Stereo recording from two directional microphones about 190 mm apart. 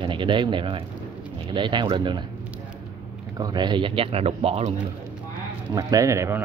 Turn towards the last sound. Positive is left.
turn(degrees=-15)  # may be behind; listen again after turning